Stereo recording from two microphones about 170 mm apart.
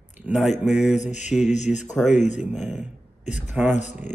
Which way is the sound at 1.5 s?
45° left (ahead or behind).